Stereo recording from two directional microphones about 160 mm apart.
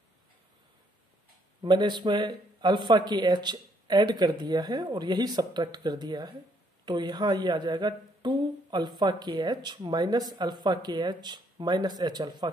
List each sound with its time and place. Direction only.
1.6 s speech: 30° right (ahead or behind)